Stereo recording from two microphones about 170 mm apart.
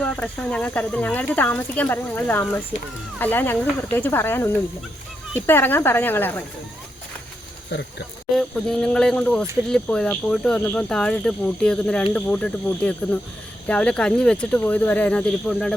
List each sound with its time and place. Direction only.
0.0 s speech: 5° left (ahead or behind)
7.7 s speech: 90° left
8.4 s speech: 5° left (ahead or behind)